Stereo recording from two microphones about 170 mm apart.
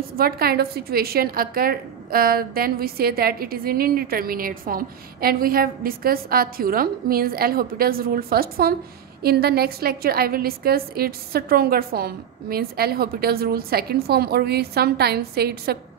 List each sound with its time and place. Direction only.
0.2 s a woman's voice: 65° right (ahead or behind)